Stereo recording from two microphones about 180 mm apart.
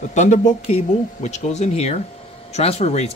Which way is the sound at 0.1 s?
40° left (ahead or behind).